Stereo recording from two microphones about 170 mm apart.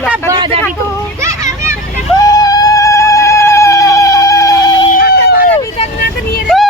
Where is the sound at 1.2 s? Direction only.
15° right (ahead or behind).